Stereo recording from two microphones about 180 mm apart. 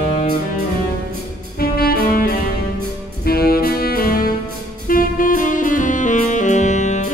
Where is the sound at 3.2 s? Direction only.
55° left (ahead or behind).